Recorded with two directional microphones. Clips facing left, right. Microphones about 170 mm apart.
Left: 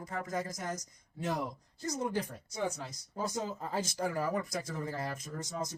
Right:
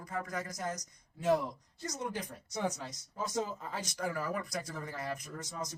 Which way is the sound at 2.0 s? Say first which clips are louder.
Left 4 dB; 30° left (ahead or behind).